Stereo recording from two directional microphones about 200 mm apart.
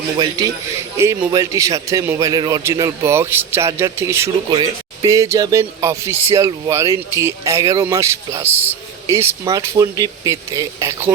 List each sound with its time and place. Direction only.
0.2 s a man's voice: 20° right (ahead or behind)